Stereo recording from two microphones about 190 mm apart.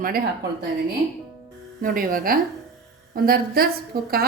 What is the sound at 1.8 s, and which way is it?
A woman's voice, 50° right (ahead or behind).